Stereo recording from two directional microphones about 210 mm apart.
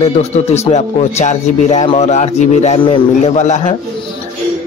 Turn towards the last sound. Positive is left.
turn(degrees=35)  # may be behind; listen again after turning